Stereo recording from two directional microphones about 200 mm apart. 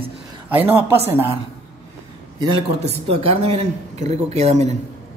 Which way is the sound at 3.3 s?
30° right (ahead or behind).